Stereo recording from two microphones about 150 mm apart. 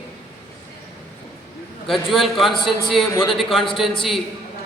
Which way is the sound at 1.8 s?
Centre (ahead or behind).